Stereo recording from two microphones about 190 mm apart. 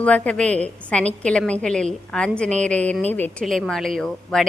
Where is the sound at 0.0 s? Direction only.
5° left (ahead or behind).